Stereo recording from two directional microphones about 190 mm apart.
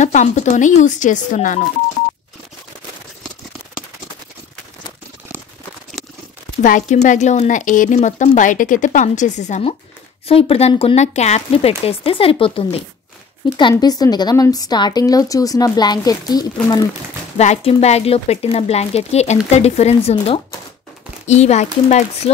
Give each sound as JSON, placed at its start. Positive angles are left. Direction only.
{"t": 0.0, "sound": "speech", "side_deg": 40}
{"t": 5.9, "sound": "a sound", "side_deg": 0}
{"t": 6.6, "sound": "a woman's voice", "side_deg": 40}
{"t": 17.4, "sound": "speech", "side_deg": 35}